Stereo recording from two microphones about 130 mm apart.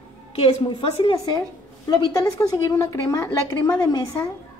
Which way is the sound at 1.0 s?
40° left (ahead or behind).